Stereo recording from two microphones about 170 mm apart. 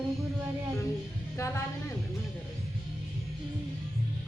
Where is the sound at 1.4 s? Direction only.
15° left (ahead or behind).